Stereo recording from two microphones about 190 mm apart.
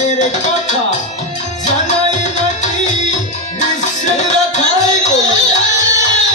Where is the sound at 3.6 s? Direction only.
35° left (ahead or behind).